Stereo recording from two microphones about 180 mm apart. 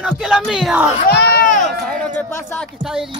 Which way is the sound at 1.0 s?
50° left (ahead or behind).